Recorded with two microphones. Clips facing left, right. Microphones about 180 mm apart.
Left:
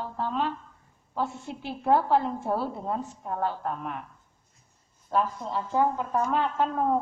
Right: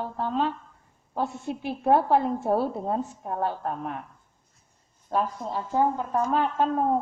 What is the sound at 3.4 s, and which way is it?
Speech, 45° right (ahead or behind).